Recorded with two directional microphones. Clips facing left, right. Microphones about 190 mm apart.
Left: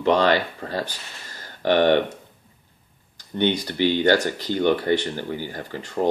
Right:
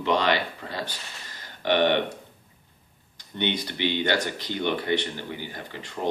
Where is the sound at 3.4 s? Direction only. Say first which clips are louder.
Left 6 dB; 40° left (ahead or behind).